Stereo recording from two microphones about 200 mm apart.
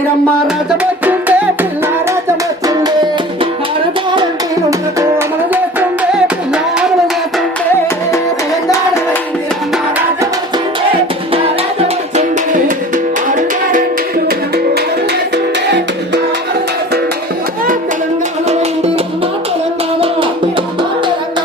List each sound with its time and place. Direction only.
1.0 s music: 10° right (ahead or behind)
6.1 s music: 5° right (ahead or behind)
11.3 s music: 30° right (ahead or behind)